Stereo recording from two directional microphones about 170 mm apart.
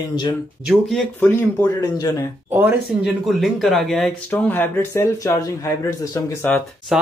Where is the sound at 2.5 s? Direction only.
5° right (ahead or behind); by 6.6 s 10° left (ahead or behind).